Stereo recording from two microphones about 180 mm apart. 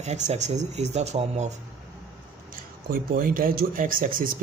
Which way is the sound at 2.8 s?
55° right (ahead or behind).